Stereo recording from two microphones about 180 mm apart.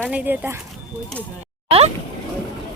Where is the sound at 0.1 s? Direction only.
10° right (ahead or behind).